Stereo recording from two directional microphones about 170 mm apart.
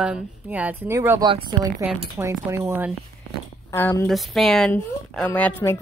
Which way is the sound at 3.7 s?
15° left (ahead or behind).